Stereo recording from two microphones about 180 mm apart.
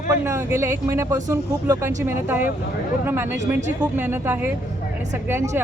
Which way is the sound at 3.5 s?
10° right (ahead or behind).